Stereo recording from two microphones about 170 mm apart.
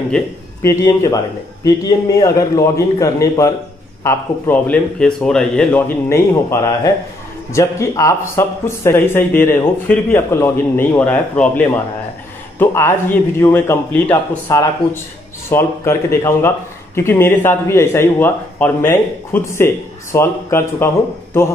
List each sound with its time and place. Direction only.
0.1 s a man's voice: 15° left (ahead or behind)